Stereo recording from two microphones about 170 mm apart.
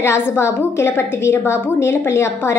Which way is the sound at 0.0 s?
15° left (ahead or behind).